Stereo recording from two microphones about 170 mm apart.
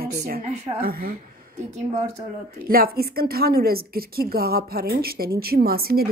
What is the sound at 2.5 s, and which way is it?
A woman's voice, 60° right (ahead or behind).